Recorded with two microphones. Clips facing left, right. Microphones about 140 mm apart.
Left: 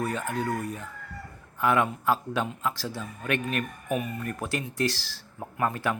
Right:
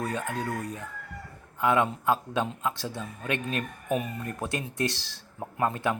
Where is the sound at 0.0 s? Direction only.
20° right (ahead or behind).